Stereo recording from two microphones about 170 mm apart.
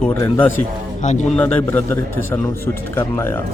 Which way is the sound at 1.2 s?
10° left (ahead or behind).